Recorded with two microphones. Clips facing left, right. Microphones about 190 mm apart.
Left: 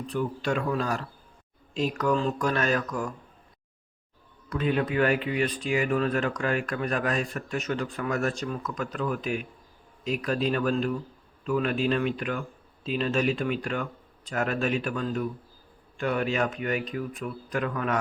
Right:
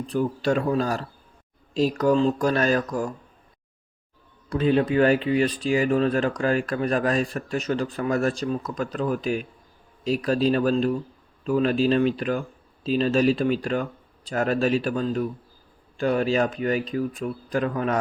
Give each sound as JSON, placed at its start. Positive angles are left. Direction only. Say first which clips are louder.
{"t": 0.1, "sound": "speech", "louder": "right 5 dB", "side_deg": -35}
{"t": 4.4, "sound": "speech", "louder": "right 6 dB", "side_deg": -30}